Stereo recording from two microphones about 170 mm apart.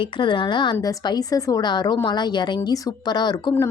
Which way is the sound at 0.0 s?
30° left (ahead or behind).